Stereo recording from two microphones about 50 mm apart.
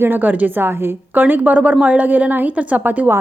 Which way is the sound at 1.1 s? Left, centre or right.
Right.